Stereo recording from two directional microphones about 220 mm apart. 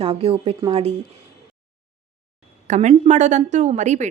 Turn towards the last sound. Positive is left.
turn(degrees=-35)  # may be behind; listen again after turning